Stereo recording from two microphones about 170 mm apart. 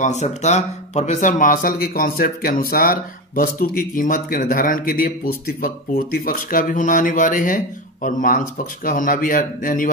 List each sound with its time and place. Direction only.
0.0 s speech: 40° left (ahead or behind)